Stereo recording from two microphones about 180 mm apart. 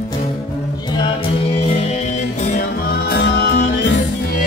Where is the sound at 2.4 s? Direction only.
45° left (ahead or behind); by 3.9 s 80° left.